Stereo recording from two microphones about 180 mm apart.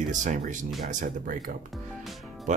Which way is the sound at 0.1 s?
45° right (ahead or behind).